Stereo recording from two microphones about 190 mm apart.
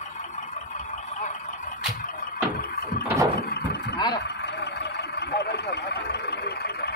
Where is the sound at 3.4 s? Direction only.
60° left (ahead or behind).